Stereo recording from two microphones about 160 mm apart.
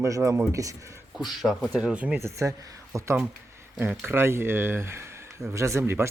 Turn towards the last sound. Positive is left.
turn(degrees=-15)  # may be behind; listen again after turning